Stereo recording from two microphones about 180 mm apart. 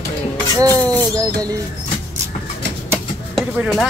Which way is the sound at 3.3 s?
Centre (ahead or behind).